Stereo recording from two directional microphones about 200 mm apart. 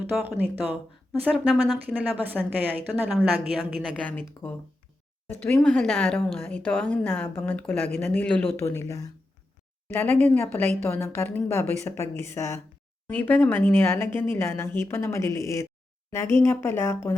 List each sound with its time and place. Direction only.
0.1 s a woman's voice: 10° right (ahead or behind); by 17.2 s 15° left (ahead or behind)